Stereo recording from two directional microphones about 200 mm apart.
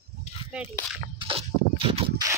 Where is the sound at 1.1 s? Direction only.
25° right (ahead or behind).